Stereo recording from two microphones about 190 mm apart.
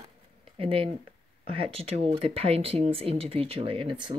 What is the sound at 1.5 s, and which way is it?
Speech, 30° right (ahead or behind).